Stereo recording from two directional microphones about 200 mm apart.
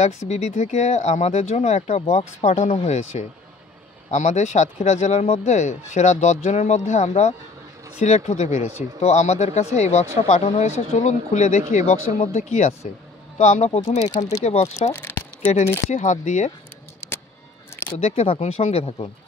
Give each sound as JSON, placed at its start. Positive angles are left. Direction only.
{"t": 0.3, "sound": "speech", "side_deg": 35}
{"t": 14.0, "sound": "speech", "side_deg": 20}
{"t": 14.4, "sound": "speech", "side_deg": 35}
{"t": 14.9, "sound": "speech", "side_deg": 10}
{"t": 15.9, "sound": "speech", "side_deg": 35}
{"t": 17.9, "sound": "speech", "side_deg": 35}